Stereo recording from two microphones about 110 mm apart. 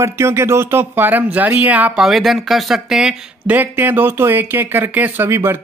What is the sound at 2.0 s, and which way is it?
Speech, centre (ahead or behind).